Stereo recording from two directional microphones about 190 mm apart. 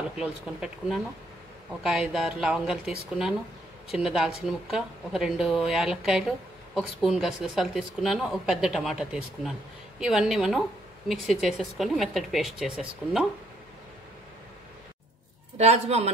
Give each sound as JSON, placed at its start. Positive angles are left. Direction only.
{"t": 0.2, "sound": "speech", "side_deg": -5}
{"t": 3.9, "sound": "speech", "side_deg": 0}
{"t": 15.5, "sound": "a man's voice", "side_deg": -35}